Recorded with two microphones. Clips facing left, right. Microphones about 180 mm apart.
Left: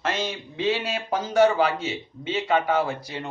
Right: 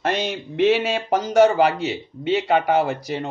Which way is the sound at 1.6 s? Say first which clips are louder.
Right 4 dB; 70° right (ahead or behind).